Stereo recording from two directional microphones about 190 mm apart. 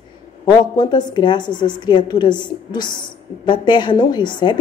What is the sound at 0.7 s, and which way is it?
A woman's voice, 20° left (ahead or behind).